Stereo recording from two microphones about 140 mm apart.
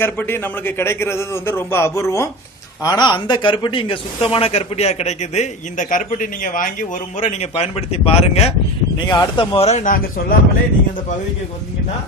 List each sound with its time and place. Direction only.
0.0 s a man's voice: 15° left (ahead or behind)
2.8 s a man's voice: 30° left (ahead or behind); by 8.5 s 45° left (ahead or behind)
9.0 s a man's voice: 30° left (ahead or behind); by 10.3 s 70° left (ahead or behind)